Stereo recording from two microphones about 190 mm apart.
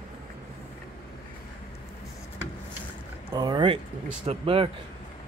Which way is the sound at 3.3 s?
20° right (ahead or behind).